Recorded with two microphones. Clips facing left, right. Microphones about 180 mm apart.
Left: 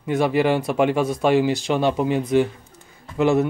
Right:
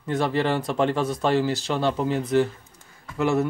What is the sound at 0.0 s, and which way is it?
Speech, 10° left (ahead or behind).